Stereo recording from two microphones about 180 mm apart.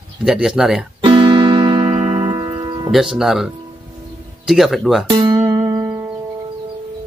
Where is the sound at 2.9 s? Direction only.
Centre (ahead or behind).